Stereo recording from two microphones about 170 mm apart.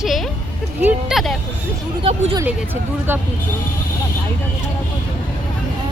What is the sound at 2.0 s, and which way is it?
Speech, 35° right (ahead or behind).